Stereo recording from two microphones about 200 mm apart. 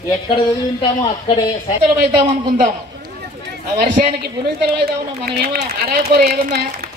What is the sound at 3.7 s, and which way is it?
A man's voice, 45° right (ahead or behind).